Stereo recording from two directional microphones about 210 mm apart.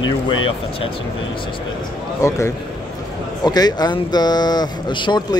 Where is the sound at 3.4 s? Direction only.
20° left (ahead or behind).